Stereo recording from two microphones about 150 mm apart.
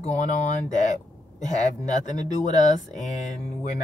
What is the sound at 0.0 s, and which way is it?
Speech, 50° left (ahead or behind).